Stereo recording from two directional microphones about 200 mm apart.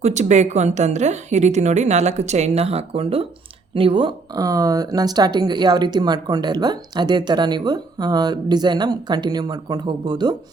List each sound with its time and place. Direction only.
0.0 s a woman's voice: 35° right (ahead or behind)